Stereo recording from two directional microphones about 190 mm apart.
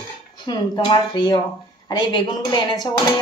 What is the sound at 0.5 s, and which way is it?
Speech, 25° left (ahead or behind).